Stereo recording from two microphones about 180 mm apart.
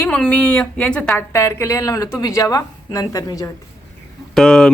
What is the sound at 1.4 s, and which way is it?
Speech, 15° left (ahead or behind).